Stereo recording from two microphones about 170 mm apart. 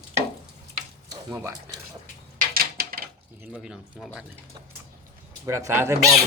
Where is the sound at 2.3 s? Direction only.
60° right (ahead or behind).